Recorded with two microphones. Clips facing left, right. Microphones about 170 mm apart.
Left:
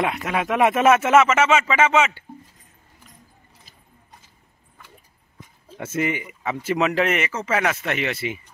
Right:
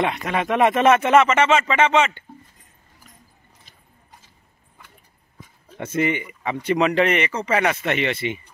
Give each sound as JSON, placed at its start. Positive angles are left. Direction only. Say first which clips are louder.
{"t": 0.0, "sound": "speech", "louder": "right 1 dB", "side_deg": 5}
{"t": 5.8, "sound": "speech", "louder": "right 2 dB", "side_deg": 5}